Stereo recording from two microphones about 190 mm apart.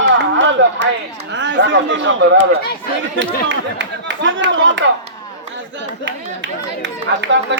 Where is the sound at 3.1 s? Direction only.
70° right (ahead or behind).